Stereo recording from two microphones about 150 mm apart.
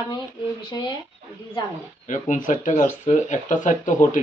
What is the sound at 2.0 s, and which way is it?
Speech, 60° left (ahead or behind).